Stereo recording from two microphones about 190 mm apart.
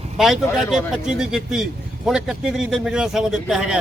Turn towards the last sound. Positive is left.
turn(degrees=-5)  # may be behind; listen again after turning